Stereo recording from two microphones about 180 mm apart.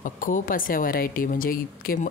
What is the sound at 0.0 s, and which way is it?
Speech, 50° left (ahead or behind).